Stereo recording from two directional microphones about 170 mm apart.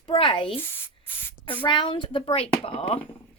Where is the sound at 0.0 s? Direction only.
30° left (ahead or behind).